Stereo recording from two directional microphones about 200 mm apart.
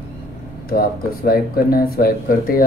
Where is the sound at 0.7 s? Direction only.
45° left (ahead or behind).